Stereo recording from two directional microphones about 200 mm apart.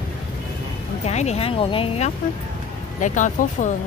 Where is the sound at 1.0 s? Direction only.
30° left (ahead or behind).